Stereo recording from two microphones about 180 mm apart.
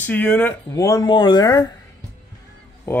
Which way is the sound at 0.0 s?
10° left (ahead or behind).